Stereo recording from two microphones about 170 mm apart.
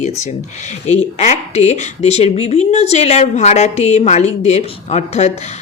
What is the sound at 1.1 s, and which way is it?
Speech, 40° left (ahead or behind).